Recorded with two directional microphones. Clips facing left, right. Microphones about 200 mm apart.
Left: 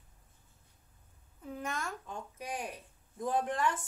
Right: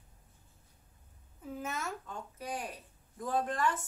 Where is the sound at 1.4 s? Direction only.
Centre (ahead or behind).